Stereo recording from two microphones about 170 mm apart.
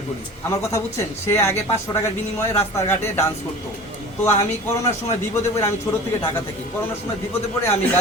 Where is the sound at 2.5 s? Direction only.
15° left (ahead or behind).